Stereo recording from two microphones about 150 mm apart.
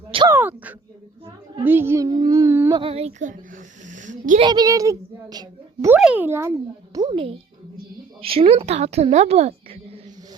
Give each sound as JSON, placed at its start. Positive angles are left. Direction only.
{"t": 0.3, "sound": "a child's voice", "side_deg": -15}
{"t": 2.7, "sound": "a woman's voice", "side_deg": -40}
{"t": 3.8, "sound": "a sound", "side_deg": -55}
{"t": 4.4, "sound": "a woman's voice", "side_deg": -30}
{"t": 5.9, "sound": "a child's voice", "side_deg": -10}
{"t": 6.9, "sound": "a woman's voice", "side_deg": -30}